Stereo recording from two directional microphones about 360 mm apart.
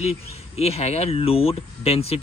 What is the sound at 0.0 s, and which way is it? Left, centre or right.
Speech, centre.